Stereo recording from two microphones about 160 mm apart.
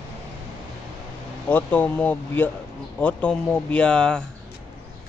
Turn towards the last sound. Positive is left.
turn(degrees=5)  # may be behind; listen again after turning